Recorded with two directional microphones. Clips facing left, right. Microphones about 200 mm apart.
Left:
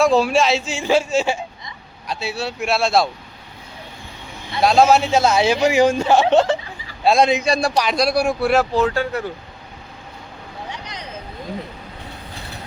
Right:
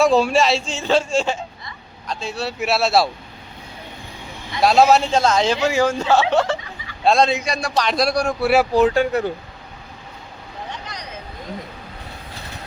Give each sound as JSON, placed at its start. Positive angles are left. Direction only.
{"t": 0.0, "sound": "speech", "side_deg": 0}
{"t": 4.6, "sound": "speech", "side_deg": 0}
{"t": 7.4, "sound": "a man's voice", "side_deg": 30}
{"t": 7.8, "sound": "a man's voice", "side_deg": 0}
{"t": 8.4, "sound": "speech", "side_deg": -10}